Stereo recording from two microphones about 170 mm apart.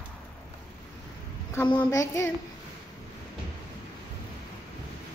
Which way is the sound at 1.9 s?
20° left (ahead or behind).